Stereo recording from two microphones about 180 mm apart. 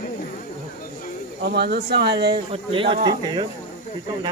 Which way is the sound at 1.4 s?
65° right (ahead or behind).